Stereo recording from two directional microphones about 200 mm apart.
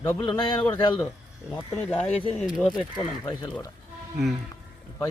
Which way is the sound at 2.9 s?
25° left (ahead or behind).